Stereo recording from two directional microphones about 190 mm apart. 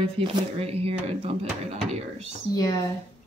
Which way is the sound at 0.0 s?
30° right (ahead or behind).